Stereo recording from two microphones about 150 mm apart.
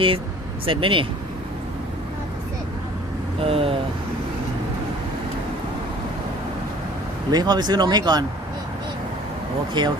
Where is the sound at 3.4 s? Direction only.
40° right (ahead or behind).